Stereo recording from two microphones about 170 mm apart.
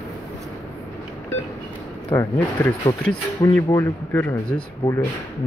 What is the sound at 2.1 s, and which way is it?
Speech, 20° left (ahead or behind).